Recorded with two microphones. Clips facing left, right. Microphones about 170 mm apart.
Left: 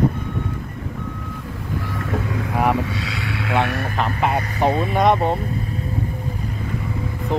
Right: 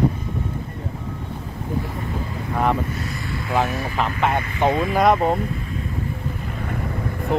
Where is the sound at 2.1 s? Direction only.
85° left.